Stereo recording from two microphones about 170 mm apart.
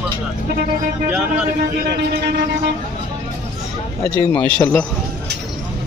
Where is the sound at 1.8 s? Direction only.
75° right (ahead or behind).